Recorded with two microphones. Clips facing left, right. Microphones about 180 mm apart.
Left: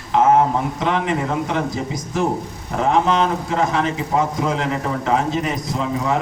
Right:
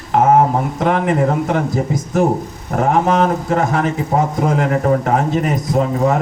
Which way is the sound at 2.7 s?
50° right (ahead or behind).